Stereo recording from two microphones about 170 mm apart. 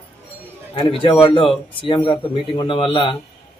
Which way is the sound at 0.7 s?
30° left (ahead or behind).